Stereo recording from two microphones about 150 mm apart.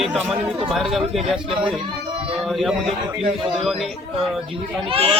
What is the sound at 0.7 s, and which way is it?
Speech, centre (ahead or behind).